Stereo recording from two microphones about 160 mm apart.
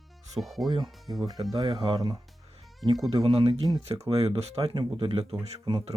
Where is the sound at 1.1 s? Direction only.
30° right (ahead or behind).